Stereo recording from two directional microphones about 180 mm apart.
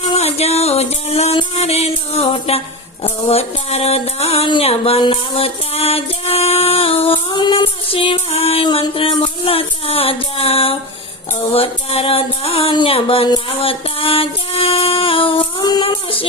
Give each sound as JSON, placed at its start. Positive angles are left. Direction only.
{"t": 0.0, "sound": "music", "side_deg": 35}